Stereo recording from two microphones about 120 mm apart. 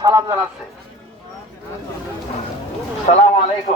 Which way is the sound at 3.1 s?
65° left (ahead or behind).